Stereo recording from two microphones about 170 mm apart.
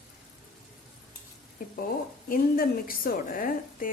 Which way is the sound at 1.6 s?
55° left (ahead or behind).